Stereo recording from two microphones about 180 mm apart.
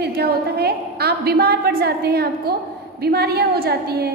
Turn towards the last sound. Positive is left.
turn(degrees=-60)  # may be behind; listen again after turning